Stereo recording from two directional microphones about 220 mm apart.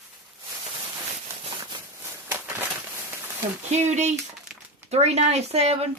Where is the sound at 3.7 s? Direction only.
30° right (ahead or behind).